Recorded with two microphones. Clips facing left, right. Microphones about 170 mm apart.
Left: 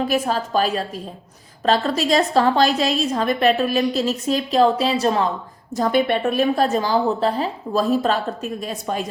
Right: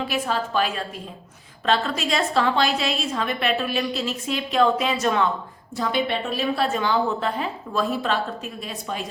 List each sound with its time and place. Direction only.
0.1 s a woman's voice: 40° left (ahead or behind)
5.7 s a woman's voice: 45° left (ahead or behind)